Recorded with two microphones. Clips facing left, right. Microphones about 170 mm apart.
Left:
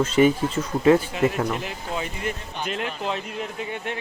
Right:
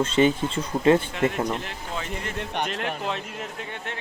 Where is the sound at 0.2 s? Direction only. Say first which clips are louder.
Left 3 dB; 10° left (ahead or behind).